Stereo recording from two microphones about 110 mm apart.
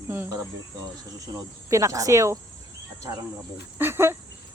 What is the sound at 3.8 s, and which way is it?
Speech, 20° right (ahead or behind).